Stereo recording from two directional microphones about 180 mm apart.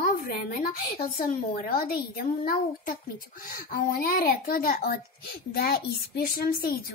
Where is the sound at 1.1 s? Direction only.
55° left (ahead or behind).